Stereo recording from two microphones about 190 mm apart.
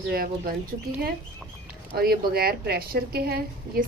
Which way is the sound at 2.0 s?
55° right (ahead or behind).